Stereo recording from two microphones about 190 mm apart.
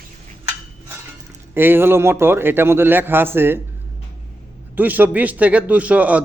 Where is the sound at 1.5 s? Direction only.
10° right (ahead or behind).